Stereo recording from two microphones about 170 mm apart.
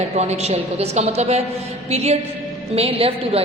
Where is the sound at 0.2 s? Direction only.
40° right (ahead or behind).